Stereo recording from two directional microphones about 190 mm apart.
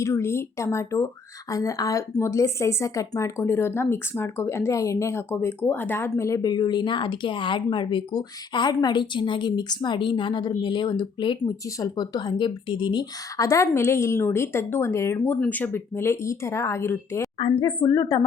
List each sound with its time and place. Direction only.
0.0 s speech: 15° left (ahead or behind)